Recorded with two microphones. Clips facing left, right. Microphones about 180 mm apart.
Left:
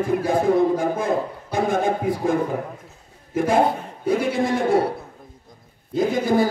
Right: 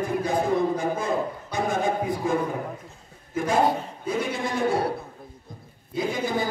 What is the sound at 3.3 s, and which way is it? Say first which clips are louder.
A man's voice: left 3 dB; 55° left (ahead or behind).